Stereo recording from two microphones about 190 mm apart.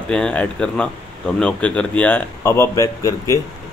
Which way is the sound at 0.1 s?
5° left (ahead or behind).